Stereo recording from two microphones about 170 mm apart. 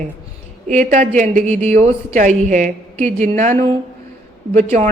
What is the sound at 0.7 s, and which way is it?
A woman's voice, 40° right (ahead or behind).